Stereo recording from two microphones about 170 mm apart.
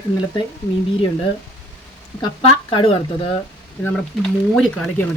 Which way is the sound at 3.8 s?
5° left (ahead or behind).